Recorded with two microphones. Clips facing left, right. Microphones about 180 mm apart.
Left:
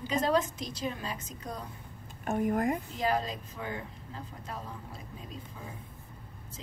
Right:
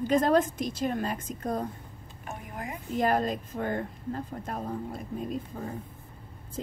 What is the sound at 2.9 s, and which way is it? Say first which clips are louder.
Speech: right 5 dB; 50° right (ahead or behind).